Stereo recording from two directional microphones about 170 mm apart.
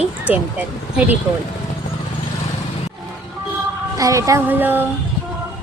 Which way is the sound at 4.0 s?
20° right (ahead or behind).